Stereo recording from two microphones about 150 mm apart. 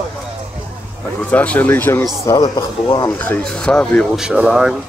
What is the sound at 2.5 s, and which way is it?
Speech, 30° left (ahead or behind).